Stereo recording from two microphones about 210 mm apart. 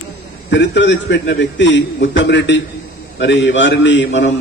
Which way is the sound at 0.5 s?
60° left (ahead or behind).